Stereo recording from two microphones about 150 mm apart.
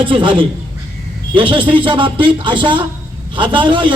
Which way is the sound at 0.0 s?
35° right (ahead or behind).